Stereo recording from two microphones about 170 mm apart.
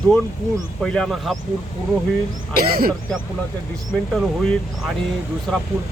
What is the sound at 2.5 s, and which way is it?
Speech, 60° right (ahead or behind).